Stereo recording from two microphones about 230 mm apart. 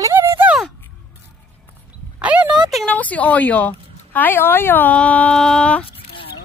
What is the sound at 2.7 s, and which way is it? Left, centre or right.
A woman's voice, centre.